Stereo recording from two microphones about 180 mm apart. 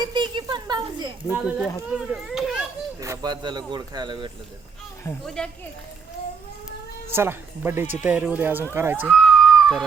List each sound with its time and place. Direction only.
0.0 s a sound: 25° right (ahead or behind)
1.3 s a child's voice: 5° right (ahead or behind)
3.0 s speech: 20° right (ahead or behind)
5.2 s a child's voice: 5° left (ahead or behind)
7.2 s speech: 10° right (ahead or behind)
9.0 s a sound: centre (ahead or behind)